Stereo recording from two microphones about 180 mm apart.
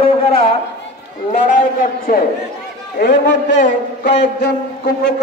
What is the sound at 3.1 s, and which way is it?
A man's voice, 75° left (ahead or behind).